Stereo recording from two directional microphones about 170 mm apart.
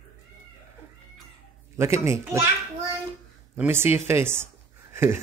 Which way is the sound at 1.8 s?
15° right (ahead or behind).